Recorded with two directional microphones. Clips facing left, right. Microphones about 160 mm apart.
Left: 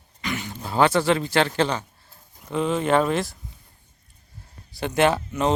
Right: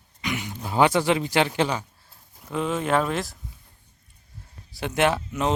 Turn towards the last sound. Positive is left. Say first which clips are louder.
# left 2 dB
turn(degrees=0)  # may be behind; listen again after turning